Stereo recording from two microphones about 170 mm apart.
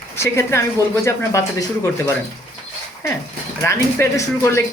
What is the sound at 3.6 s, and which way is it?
Speech, 15° left (ahead or behind).